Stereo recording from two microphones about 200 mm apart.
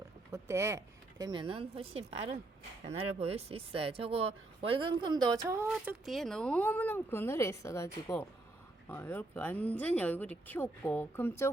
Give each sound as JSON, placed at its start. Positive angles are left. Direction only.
{"t": 0.3, "sound": "speech", "side_deg": -15}
{"t": 5.6, "sound": "speech", "side_deg": -5}